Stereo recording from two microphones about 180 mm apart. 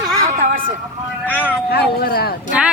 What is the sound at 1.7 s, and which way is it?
Speech, 60° left (ahead or behind).